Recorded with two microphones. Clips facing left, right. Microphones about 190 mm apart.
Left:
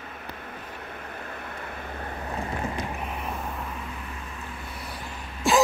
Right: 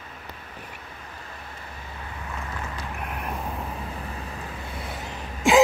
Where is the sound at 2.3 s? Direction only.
35° left (ahead or behind).